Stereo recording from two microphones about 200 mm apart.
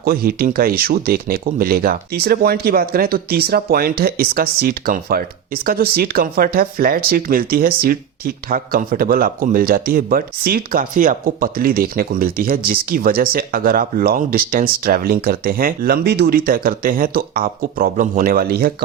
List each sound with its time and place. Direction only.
0.0 s speech: 50° right (ahead or behind)